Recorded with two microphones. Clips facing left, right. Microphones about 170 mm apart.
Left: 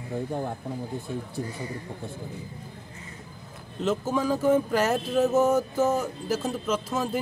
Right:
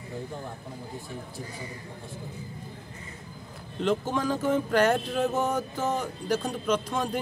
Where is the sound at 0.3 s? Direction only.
60° left (ahead or behind).